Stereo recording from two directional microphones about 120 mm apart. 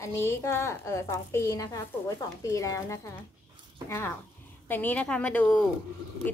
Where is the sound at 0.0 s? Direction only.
20° left (ahead or behind).